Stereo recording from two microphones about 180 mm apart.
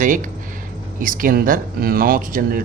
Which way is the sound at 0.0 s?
45° right (ahead or behind).